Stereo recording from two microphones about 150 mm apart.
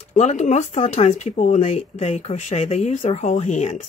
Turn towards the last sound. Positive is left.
turn(degrees=50)  # may be behind; listen again after turning